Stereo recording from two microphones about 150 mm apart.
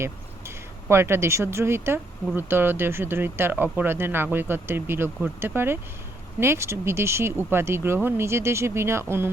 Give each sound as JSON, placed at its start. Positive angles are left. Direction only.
{"t": 0.0, "sound": "speech", "side_deg": -15}